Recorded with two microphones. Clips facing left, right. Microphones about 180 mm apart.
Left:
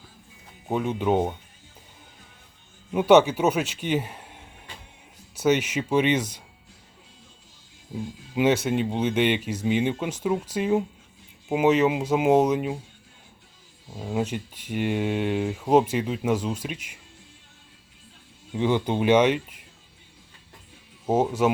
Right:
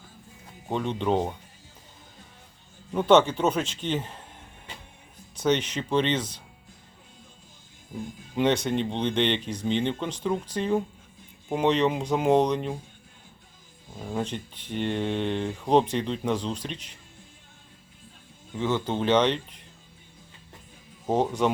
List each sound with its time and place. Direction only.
0.7 s speech: 5° left (ahead or behind)
2.9 s speech: 10° left (ahead or behind)
5.3 s speech: 10° left (ahead or behind)
7.9 s speech: 5° left (ahead or behind)
13.9 s speech: 5° left (ahead or behind)
18.5 s speech: 15° left (ahead or behind)
21.1 s speech: 5° left (ahead or behind)